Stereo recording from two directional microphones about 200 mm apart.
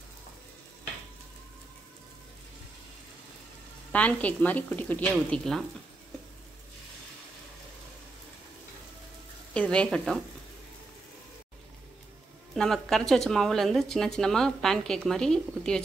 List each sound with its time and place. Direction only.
3.9 s speech: 5° left (ahead or behind)
9.5 s speech: 5° left (ahead or behind)
12.5 s speech: centre (ahead or behind)